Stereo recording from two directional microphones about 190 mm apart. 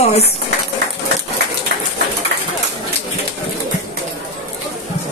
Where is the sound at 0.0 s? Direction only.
35° left (ahead or behind).